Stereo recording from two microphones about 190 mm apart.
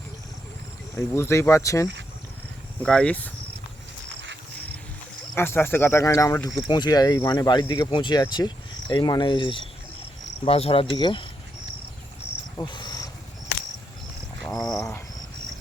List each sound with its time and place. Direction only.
0.9 s speech: 15° left (ahead or behind)
2.8 s speech: 5° left (ahead or behind)
5.4 s speech: 10° left (ahead or behind)
12.7 s insect: 20° left (ahead or behind)
14.6 s a sound: 5° left (ahead or behind)